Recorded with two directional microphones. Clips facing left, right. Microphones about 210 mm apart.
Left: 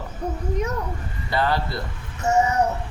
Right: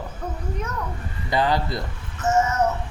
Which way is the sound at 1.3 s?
15° right (ahead or behind).